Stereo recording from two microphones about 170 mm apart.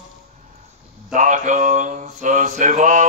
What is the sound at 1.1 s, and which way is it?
Mantra, 45° right (ahead or behind).